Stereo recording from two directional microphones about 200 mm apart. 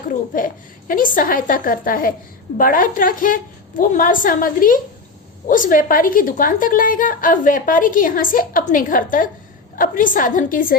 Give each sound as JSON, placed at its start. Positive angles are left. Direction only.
{"t": 0.1, "sound": "a woman's voice", "side_deg": 40}